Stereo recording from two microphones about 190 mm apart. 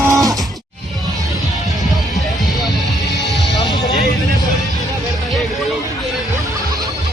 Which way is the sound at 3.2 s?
Centre (ahead or behind).